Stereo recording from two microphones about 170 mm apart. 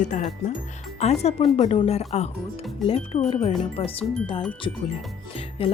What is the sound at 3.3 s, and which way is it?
Speech, 40° left (ahead or behind).